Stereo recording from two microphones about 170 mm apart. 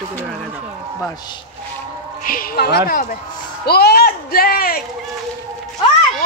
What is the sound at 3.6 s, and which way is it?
Speech, 65° left (ahead or behind).